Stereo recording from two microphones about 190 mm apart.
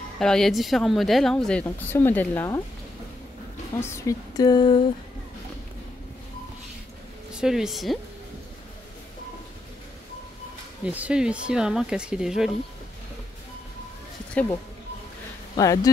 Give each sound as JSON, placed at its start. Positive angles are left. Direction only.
{"t": 0.2, "sound": "speech", "side_deg": 0}
{"t": 3.8, "sound": "speech", "side_deg": 15}
{"t": 7.3, "sound": "speech", "side_deg": -5}
{"t": 10.9, "sound": "speech", "side_deg": -5}
{"t": 15.5, "sound": "speech", "side_deg": 20}